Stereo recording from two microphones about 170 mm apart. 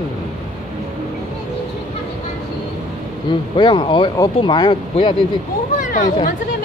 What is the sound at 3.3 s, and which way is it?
Speech, 25° left (ahead or behind).